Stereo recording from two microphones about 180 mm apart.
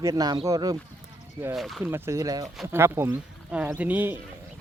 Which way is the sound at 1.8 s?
15° right (ahead or behind).